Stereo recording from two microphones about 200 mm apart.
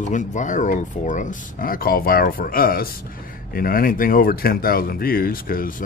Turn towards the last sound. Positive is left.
turn(degrees=45)  # may be behind; listen again after turning